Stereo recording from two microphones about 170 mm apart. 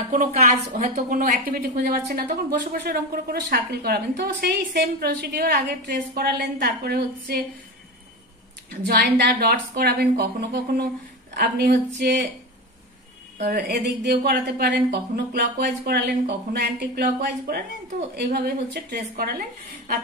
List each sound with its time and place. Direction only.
0.1 s a woman's voice: 50° right (ahead or behind); by 7.4 s 70° right (ahead or behind)
8.8 s a woman's voice: 70° right (ahead or behind)
13.4 s a woman's voice: 65° right (ahead or behind)